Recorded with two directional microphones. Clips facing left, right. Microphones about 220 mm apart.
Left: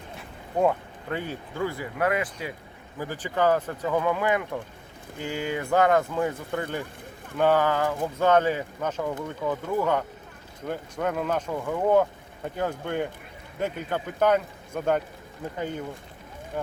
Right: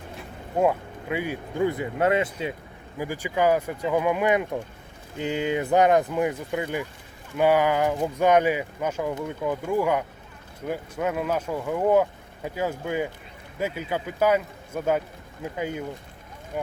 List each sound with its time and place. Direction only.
0.6 s speech: 10° right (ahead or behind); by 2.5 s 25° right (ahead or behind)
3.0 s speech: 10° right (ahead or behind)